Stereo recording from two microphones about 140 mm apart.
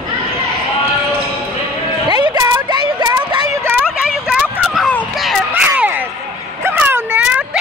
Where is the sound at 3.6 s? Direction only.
5° right (ahead or behind).